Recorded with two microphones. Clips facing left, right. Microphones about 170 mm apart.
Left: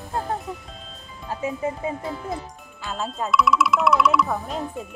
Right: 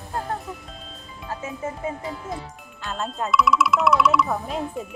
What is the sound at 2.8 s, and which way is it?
Speech, centre (ahead or behind).